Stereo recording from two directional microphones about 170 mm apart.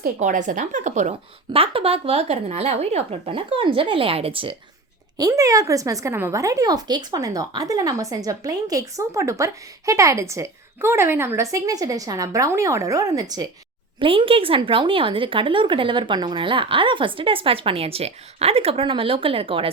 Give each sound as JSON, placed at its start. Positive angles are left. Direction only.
{"t": 0.0, "sound": "a woman's voice", "side_deg": -50}
{"t": 1.5, "sound": "speech", "side_deg": -35}
{"t": 5.1, "sound": "a woman's voice", "side_deg": -20}